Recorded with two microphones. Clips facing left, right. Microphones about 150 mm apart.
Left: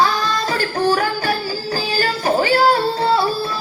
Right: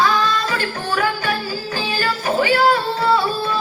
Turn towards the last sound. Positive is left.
turn(degrees=35)  # may be behind; listen again after turning